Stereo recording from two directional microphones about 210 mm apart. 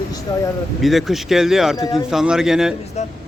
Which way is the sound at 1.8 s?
15° left (ahead or behind).